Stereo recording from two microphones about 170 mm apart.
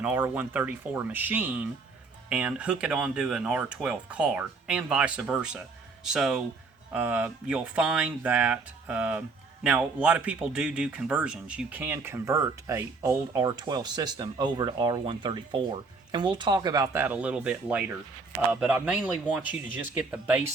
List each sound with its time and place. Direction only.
0.0 s speech: 10° right (ahead or behind)